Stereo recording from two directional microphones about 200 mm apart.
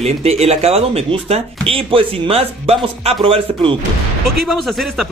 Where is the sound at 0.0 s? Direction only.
30° right (ahead or behind).